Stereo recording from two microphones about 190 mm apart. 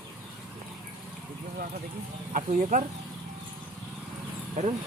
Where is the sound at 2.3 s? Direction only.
40° right (ahead or behind).